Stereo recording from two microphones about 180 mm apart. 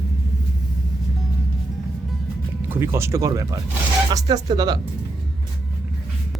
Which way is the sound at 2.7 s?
15° right (ahead or behind).